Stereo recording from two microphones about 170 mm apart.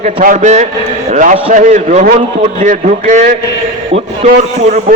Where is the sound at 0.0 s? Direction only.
50° right (ahead or behind).